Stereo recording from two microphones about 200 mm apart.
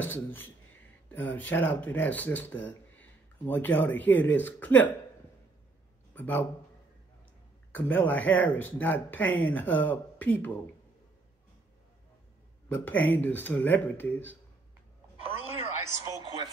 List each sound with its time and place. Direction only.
0.0 s speech: 10° left (ahead or behind)
6.1 s speech: 10° left (ahead or behind)
7.7 s speech: 10° left (ahead or behind)
12.6 s speech: 10° left (ahead or behind)
15.3 s a sound: 15° right (ahead or behind)